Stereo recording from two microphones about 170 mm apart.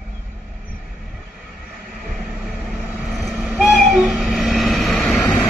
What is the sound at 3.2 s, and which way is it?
Train, centre (ahead or behind).